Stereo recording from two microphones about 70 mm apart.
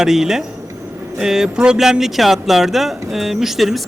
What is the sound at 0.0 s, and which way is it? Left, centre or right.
A man's voice, centre.